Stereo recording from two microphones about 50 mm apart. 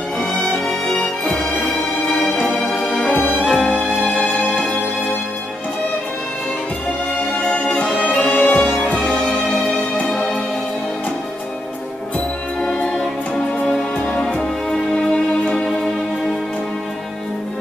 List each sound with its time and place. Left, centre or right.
0.9 s music: left
3.3 s music: centre
3.6 s music: left
7.3 s music: centre
7.9 s music: left
8.6 s music: left
14.0 s music: centre